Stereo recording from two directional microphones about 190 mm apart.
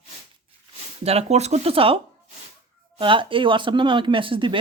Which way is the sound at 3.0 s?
25° right (ahead or behind).